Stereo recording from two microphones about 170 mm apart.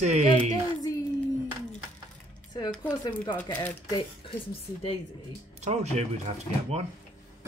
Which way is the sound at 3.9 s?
30° left (ahead or behind).